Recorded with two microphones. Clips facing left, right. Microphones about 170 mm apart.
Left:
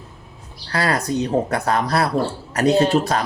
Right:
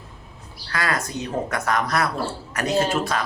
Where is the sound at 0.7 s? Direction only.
35° left (ahead or behind).